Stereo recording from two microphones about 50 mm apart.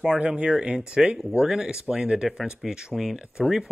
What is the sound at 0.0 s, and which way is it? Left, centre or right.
Speech, centre.